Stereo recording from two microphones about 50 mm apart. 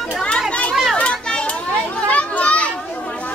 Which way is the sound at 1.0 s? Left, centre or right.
Centre.